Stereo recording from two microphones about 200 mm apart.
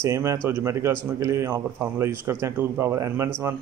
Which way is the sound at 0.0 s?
15° right (ahead or behind).